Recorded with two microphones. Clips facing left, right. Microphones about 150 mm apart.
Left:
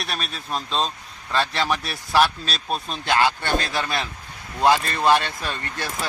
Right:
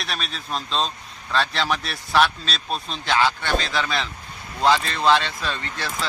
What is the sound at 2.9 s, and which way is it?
Speech, 50° left (ahead or behind).